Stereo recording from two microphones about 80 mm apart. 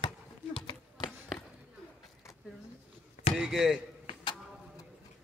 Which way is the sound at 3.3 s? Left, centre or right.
Centre.